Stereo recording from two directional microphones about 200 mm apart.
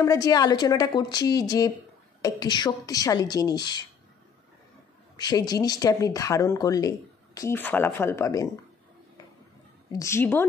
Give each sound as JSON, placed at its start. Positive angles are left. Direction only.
{"t": 0.0, "sound": "a woman's voice", "side_deg": 15}
{"t": 5.1, "sound": "speech", "side_deg": 20}
{"t": 9.9, "sound": "speech", "side_deg": 15}